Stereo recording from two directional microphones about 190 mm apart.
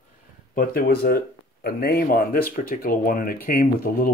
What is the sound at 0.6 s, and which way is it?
Speech, 55° left (ahead or behind).